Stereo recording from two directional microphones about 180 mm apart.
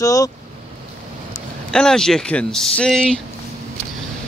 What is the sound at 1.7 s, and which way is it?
Speech, 5° left (ahead or behind).